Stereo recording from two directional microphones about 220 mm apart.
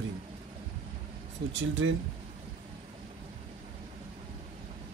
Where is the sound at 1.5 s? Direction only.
60° right (ahead or behind).